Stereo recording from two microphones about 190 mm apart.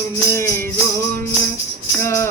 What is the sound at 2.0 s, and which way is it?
Music, 15° left (ahead or behind).